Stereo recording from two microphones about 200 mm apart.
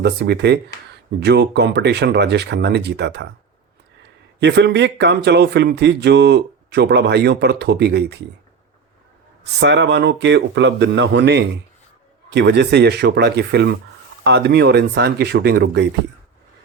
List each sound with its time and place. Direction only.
0.0 s a man's voice: 55° right (ahead or behind)
9.6 s a man's voice: 60° right (ahead or behind)